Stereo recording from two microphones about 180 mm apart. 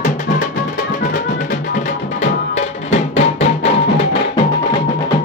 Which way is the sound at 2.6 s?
40° left (ahead or behind).